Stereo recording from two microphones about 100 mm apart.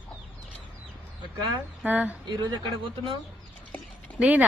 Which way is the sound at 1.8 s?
15° right (ahead or behind).